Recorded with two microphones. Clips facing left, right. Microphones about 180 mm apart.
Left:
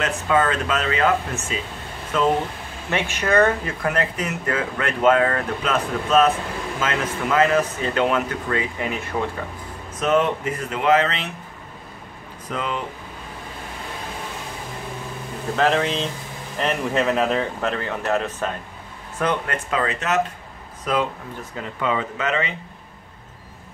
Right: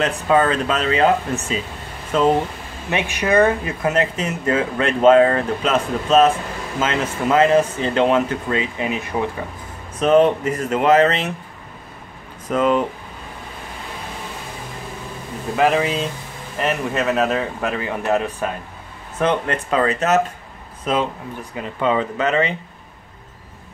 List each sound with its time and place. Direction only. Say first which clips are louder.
0.0 s speech: right 3 dB; 35° right (ahead or behind)
2.9 s speech: right 2 dB; 15° right (ahead or behind)
9.9 s speech: right 6 dB; 35° right (ahead or behind)
12.4 s speech: right 10 dB; 45° right (ahead or behind)
15.5 s speech: right 2 dB; 10° right (ahead or behind)
19.1 s speech: right 4 dB; 25° right (ahead or behind)
20.8 s speech: right 2 dB; 25° right (ahead or behind)